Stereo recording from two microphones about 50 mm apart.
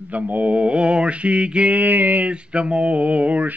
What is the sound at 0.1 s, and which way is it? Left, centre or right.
Mantra, right.